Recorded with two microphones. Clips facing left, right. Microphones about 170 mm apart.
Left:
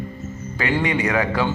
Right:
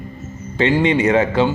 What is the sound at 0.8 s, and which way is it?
Speech, 25° right (ahead or behind).